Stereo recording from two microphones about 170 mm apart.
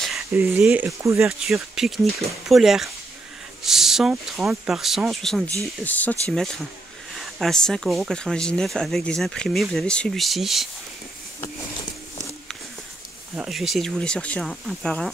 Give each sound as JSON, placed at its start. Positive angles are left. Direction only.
{"t": 0.3, "sound": "speech", "side_deg": -10}
{"t": 1.2, "sound": "speech", "side_deg": 0}
{"t": 13.4, "sound": "speech", "side_deg": 0}